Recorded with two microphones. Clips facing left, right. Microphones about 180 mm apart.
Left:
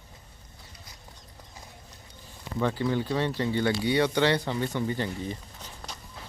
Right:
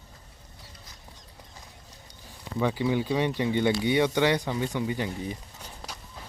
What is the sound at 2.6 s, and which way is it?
Speech, 10° right (ahead or behind).